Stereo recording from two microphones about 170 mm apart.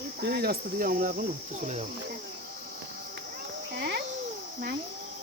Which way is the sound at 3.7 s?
80° right.